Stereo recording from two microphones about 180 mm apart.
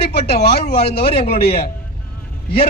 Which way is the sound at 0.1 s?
60° left (ahead or behind).